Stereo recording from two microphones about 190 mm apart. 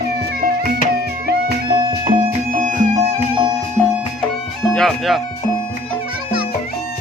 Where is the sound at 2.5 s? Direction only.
40° right (ahead or behind).